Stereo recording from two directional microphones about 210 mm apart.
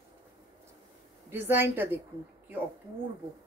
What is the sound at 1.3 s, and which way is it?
Speech, 10° right (ahead or behind).